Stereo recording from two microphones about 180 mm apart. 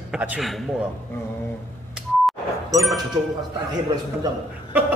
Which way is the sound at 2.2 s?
Centre (ahead or behind).